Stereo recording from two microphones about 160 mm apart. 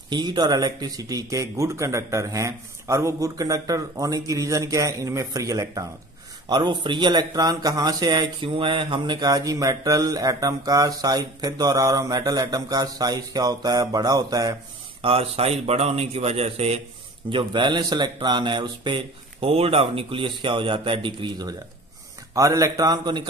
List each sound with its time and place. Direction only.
0.1 s speech: 25° right (ahead or behind)
15.0 s speech: 35° right (ahead or behind)